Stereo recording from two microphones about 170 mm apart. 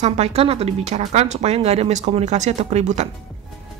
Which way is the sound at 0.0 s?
40° right (ahead or behind).